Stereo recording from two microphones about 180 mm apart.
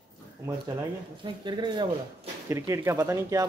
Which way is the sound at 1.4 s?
25° right (ahead or behind).